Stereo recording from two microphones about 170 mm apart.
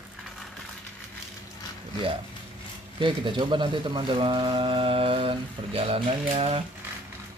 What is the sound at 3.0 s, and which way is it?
Mantra, 30° right (ahead or behind).